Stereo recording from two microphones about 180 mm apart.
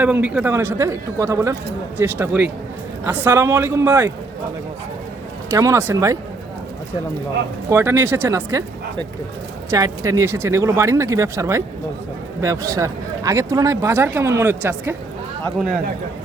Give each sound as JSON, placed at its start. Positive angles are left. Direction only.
{"t": 0.0, "sound": "speech", "side_deg": -5}
{"t": 5.5, "sound": "speech", "side_deg": -15}
{"t": 7.7, "sound": "speech", "side_deg": -15}
{"t": 9.6, "sound": "speech", "side_deg": -15}